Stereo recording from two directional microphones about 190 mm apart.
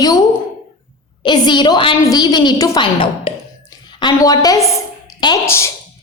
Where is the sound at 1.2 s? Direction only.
25° left (ahead or behind).